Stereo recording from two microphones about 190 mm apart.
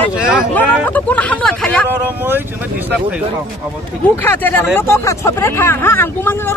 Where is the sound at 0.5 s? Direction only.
10° left (ahead or behind).